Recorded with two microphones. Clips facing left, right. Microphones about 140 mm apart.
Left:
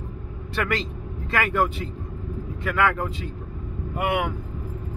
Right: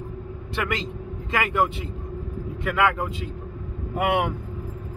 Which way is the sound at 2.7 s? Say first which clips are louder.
Even; 20° right (ahead or behind).